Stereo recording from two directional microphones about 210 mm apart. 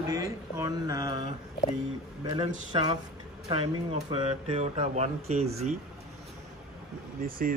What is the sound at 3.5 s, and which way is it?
Speech, 25° right (ahead or behind).